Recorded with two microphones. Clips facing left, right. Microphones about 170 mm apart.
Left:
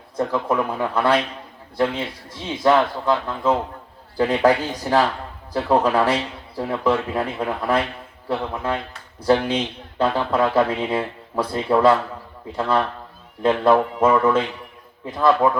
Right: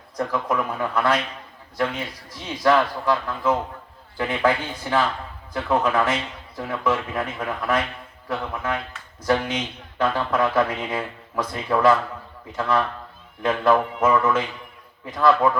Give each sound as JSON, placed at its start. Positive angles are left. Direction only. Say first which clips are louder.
{"t": 0.2, "sound": "speech", "louder": "left 3 dB", "side_deg": 30}
{"t": 4.2, "sound": "a man's voice", "louder": "left 5 dB", "side_deg": 35}